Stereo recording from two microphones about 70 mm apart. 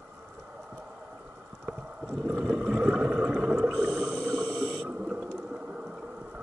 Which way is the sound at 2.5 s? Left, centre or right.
Centre.